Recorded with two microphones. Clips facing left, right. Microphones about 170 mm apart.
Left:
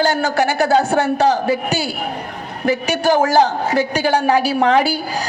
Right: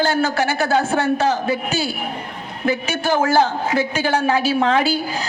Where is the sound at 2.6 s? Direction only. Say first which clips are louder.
Left 4 dB; 40° left (ahead or behind).